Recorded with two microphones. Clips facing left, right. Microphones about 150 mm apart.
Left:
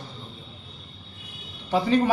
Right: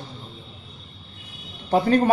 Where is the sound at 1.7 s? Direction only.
50° right (ahead or behind).